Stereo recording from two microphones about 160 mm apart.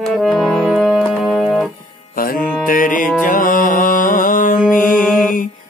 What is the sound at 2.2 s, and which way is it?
Music, 65° left (ahead or behind).